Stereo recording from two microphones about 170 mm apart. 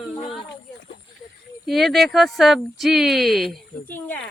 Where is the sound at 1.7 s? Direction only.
Centre (ahead or behind).